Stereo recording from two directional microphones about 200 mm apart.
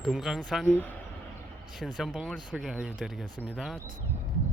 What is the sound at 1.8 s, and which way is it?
Speech, centre (ahead or behind).